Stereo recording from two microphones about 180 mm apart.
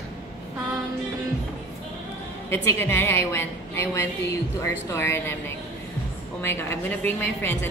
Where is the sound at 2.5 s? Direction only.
15° left (ahead or behind).